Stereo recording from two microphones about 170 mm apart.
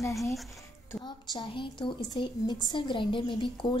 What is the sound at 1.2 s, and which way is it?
A woman's voice, 25° left (ahead or behind).